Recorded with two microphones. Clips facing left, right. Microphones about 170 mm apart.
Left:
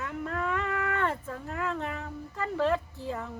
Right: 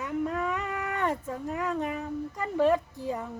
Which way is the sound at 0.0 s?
15° right (ahead or behind).